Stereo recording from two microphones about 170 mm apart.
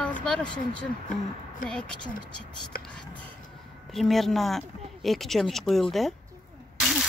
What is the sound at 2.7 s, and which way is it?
Speech, 60° left (ahead or behind).